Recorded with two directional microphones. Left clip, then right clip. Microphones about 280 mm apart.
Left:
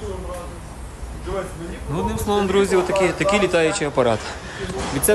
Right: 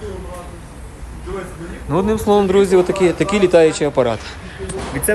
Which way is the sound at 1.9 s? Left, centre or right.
Centre.